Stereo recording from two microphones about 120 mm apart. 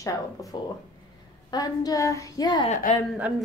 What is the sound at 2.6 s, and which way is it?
Speech, 90° left.